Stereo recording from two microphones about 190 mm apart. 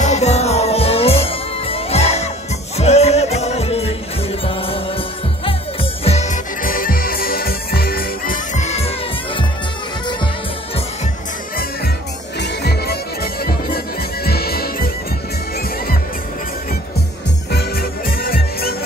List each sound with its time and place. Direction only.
0.0 s music: 35° left (ahead or behind)
12.4 s music: 60° left (ahead or behind)
17.5 s music: 55° left (ahead or behind)